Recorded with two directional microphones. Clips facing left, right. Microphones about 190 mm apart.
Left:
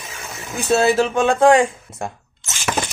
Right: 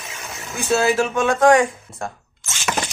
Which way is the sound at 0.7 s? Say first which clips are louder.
Left 2 dB; 35° left (ahead or behind).